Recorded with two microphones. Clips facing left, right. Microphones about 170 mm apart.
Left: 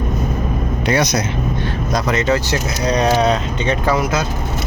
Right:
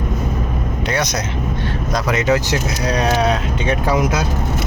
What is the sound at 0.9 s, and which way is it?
Speech, 5° left (ahead or behind).